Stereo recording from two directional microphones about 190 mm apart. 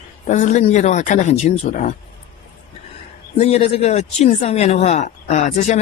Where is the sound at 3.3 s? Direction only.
30° left (ahead or behind).